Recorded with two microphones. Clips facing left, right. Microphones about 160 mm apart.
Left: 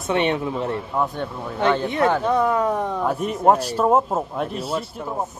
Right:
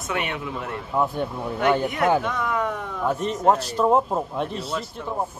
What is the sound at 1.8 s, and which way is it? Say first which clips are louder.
Speech: left 2 dB; 30° left (ahead or behind).